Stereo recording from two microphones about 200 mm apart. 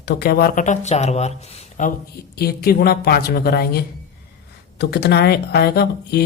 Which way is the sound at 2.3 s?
50° left (ahead or behind).